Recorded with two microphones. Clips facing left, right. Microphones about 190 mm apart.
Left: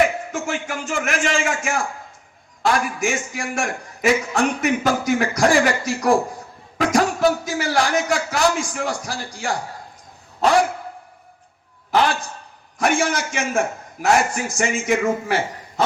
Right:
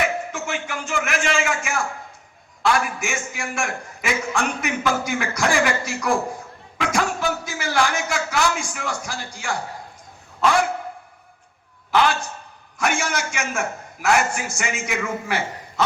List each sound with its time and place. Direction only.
0.3 s a man's voice: 45° left (ahead or behind)
11.9 s a man's voice: 35° left (ahead or behind)